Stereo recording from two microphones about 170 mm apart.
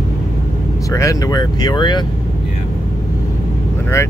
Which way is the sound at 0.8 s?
20° left (ahead or behind).